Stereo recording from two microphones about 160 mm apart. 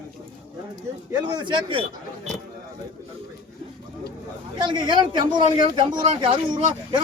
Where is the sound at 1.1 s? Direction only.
25° right (ahead or behind).